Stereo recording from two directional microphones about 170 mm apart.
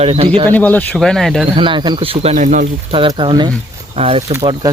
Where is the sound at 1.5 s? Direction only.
30° right (ahead or behind); by 2.6 s 45° right (ahead or behind).